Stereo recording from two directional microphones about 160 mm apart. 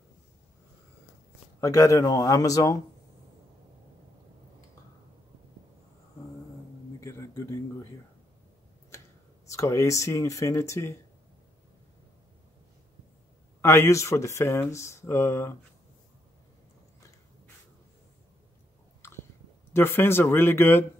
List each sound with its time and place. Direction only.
1.6 s speech: 20° left (ahead or behind)
7.0 s a sound: 20° left (ahead or behind)
9.5 s speech: 20° left (ahead or behind)
13.6 s speech: 15° left (ahead or behind)
19.7 s speech: 15° left (ahead or behind)